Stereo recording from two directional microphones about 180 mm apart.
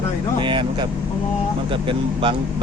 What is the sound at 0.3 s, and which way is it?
Vehicle, 25° right (ahead or behind).